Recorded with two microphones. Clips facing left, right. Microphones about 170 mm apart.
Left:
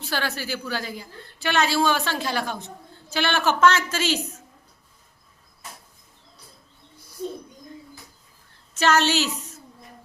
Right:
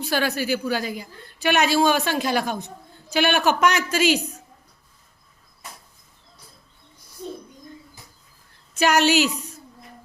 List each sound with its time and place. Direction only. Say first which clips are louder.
0.0 s a woman's voice: right 5 dB; 15° right (ahead or behind)
8.7 s a woman's voice: right 2 dB; 15° right (ahead or behind)